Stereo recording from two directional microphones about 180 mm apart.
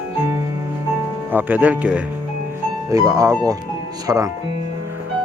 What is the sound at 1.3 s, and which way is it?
Speech, 10° right (ahead or behind).